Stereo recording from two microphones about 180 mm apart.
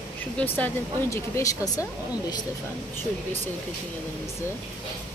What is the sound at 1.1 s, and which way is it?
Speech, 15° left (ahead or behind).